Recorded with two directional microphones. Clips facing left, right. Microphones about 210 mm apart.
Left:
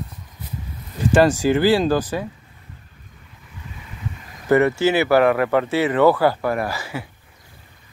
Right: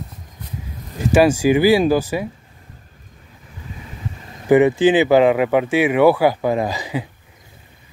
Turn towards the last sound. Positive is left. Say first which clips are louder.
# right 4 dB
turn(degrees=-15)  # may be behind; listen again after turning